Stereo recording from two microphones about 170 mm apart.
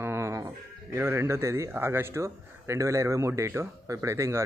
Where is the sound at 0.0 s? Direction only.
15° right (ahead or behind).